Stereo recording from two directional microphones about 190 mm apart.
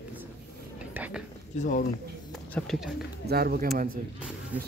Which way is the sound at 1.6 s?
45° left (ahead or behind).